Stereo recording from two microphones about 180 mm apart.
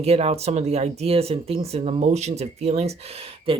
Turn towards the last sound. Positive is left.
turn(degrees=-30)  # may be behind; listen again after turning